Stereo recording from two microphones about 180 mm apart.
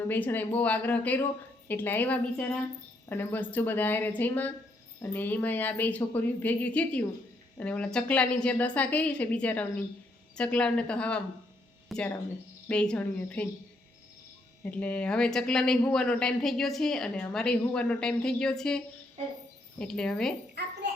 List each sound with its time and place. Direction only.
0.1 s a woman's voice: 10° left (ahead or behind)
14.6 s speech: 5° left (ahead or behind)
19.8 s speech: 5° left (ahead or behind)
20.6 s a sound: 65° right (ahead or behind)